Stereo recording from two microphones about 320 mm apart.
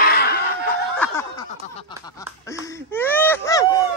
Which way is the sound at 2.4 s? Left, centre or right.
Centre.